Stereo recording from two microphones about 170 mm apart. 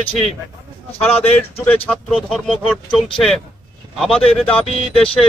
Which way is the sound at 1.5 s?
10° left (ahead or behind).